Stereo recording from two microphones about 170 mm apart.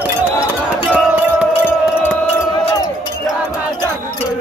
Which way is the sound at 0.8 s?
10° right (ahead or behind).